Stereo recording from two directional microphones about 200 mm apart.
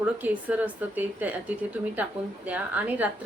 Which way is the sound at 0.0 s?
5° right (ahead or behind).